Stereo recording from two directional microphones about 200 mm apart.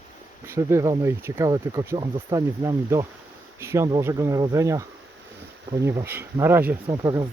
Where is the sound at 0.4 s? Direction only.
15° right (ahead or behind).